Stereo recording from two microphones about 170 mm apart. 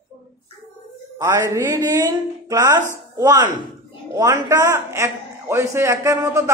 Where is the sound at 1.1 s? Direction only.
15° right (ahead or behind).